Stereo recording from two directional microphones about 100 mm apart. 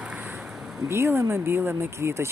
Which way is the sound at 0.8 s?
25° right (ahead or behind).